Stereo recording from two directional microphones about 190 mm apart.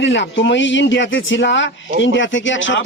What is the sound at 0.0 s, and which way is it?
Speech, 75° left (ahead or behind).